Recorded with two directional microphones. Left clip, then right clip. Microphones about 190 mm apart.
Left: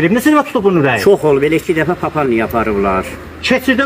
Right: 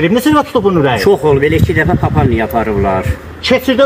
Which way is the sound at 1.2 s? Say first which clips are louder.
Right 1 dB; 10° right (ahead or behind).